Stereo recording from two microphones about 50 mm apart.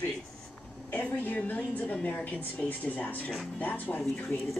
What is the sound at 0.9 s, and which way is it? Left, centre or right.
A woman's voice, left.